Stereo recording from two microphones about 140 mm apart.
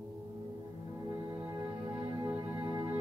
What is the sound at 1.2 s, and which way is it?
Music, 20° right (ahead or behind).